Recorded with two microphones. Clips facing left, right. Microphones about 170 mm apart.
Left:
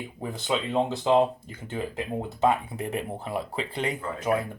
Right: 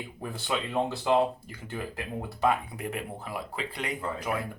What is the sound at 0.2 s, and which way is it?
Speech, 20° left (ahead or behind).